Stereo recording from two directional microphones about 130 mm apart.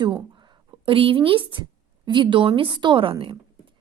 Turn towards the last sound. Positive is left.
turn(degrees=-40)  # may be behind; listen again after turning